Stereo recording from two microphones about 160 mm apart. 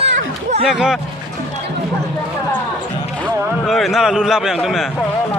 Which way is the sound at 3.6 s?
Centre (ahead or behind).